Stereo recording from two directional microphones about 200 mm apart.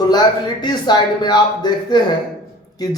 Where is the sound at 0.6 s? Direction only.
20° left (ahead or behind).